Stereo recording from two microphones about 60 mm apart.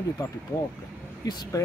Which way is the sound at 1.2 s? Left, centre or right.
Left.